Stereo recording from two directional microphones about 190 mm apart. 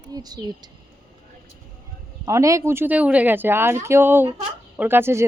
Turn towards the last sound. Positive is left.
turn(degrees=-10)  # may be behind; listen again after turning